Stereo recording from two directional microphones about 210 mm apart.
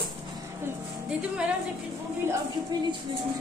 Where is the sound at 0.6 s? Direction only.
5° right (ahead or behind).